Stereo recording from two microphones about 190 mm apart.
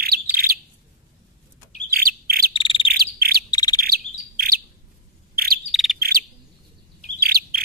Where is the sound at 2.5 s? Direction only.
25° left (ahead or behind).